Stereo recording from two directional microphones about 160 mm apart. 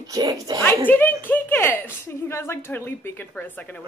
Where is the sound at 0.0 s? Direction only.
25° right (ahead or behind).